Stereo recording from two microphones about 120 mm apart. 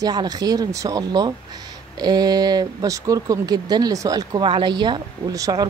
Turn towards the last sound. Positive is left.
turn(degrees=-30)  # may be behind; listen again after turning